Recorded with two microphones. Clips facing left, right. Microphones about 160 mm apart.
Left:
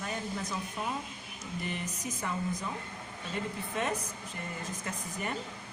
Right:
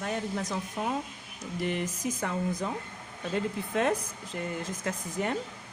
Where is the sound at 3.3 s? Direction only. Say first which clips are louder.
Right 6 dB; 90° right.